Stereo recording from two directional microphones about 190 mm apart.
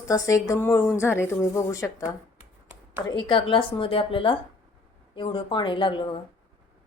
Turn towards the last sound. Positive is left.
turn(degrees=25)  # may be behind; listen again after turning